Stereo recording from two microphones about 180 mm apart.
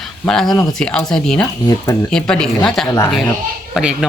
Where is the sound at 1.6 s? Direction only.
20° left (ahead or behind).